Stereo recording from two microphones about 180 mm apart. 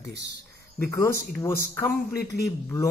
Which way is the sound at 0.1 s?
70° right (ahead or behind).